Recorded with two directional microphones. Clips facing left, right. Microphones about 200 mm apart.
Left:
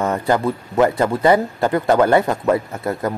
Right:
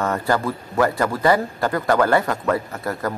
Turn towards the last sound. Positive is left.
turn(degrees=20)  # may be behind; listen again after turning